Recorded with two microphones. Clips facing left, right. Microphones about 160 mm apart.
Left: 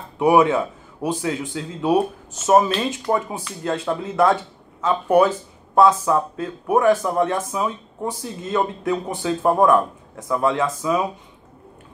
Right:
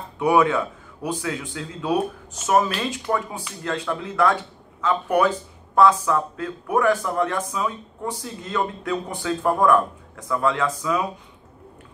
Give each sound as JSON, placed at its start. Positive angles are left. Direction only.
{"t": 0.2, "sound": "speech", "side_deg": 25}